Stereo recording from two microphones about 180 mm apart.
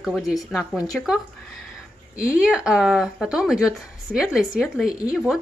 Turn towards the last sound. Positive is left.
turn(degrees=0)  # may be behind; listen again after turning